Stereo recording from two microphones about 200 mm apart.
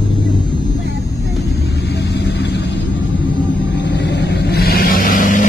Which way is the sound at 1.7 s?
55° left (ahead or behind).